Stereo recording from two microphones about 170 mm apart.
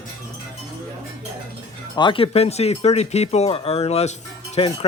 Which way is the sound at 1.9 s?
30° left (ahead or behind).